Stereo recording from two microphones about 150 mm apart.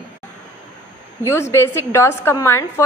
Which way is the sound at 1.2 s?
20° left (ahead or behind).